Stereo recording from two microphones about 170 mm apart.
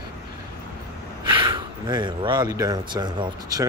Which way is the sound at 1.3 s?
25° right (ahead or behind).